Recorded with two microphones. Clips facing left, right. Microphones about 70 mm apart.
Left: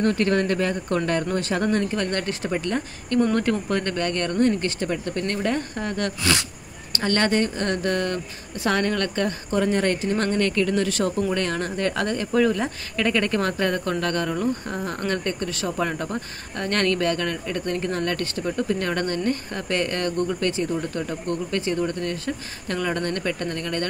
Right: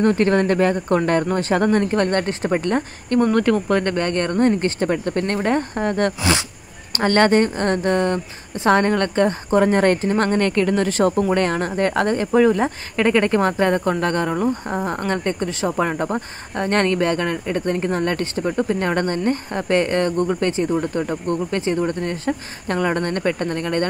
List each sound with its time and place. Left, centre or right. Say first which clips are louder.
0.0 s speech: right 4 dB; right
4.8 s speech: right 5 dB; right